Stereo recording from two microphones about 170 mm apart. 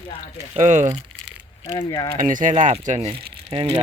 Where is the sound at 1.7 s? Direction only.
25° left (ahead or behind).